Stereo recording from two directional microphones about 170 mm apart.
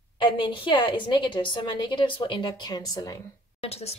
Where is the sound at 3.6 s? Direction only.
35° left (ahead or behind).